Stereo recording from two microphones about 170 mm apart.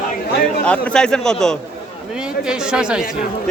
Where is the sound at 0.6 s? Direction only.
5° left (ahead or behind).